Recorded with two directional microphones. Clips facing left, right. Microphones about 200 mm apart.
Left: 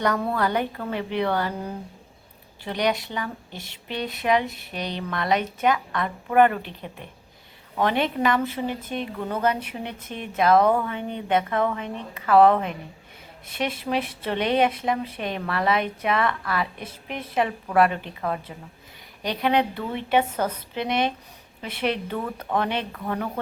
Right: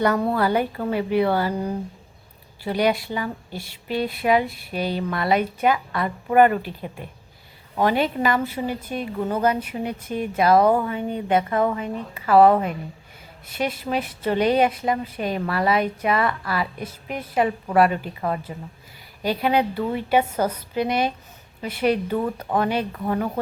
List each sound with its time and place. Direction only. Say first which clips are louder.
0.0 s speech: right 3 dB; 5° right (ahead or behind)
2.6 s a woman's voice: right 4 dB; 5° right (ahead or behind)